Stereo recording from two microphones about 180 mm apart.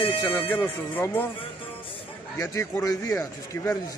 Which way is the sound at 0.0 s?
10° left (ahead or behind).